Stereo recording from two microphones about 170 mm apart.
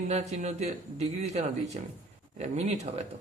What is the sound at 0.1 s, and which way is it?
A man's voice, 40° right (ahead or behind).